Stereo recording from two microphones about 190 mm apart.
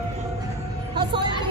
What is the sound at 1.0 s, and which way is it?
Music, 25° right (ahead or behind).